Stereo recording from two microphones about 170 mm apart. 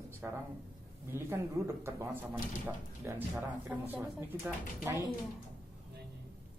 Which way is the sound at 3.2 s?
10° right (ahead or behind).